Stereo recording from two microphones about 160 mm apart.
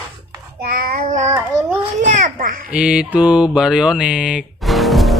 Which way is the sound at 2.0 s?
55° right (ahead or behind).